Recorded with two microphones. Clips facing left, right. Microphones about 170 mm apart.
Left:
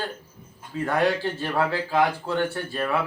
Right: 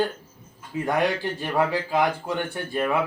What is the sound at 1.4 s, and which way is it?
Speech, 15° right (ahead or behind).